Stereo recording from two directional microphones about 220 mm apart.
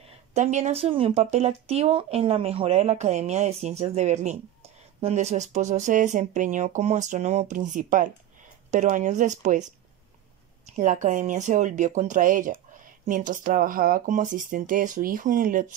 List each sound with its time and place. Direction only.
0.3 s speech: 30° right (ahead or behind)
10.8 s speech: 35° right (ahead or behind)